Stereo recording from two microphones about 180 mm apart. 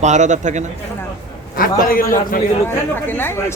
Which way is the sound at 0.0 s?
40° right (ahead or behind).